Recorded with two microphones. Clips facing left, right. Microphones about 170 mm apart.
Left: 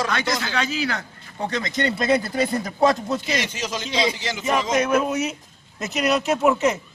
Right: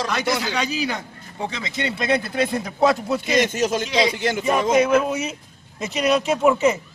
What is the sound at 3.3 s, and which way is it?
A man's voice, 50° right (ahead or behind).